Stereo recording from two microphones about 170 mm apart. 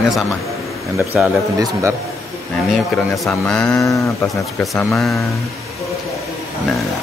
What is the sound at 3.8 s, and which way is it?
Speech, 20° left (ahead or behind).